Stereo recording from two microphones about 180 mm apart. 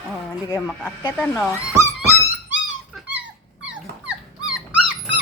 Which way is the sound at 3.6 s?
5° right (ahead or behind).